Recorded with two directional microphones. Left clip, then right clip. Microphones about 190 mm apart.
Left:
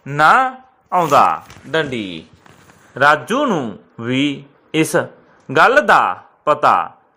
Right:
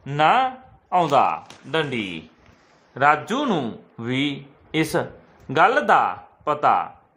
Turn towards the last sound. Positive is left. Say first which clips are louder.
# left 6 dB
turn(degrees=15)  # may be behind; listen again after turning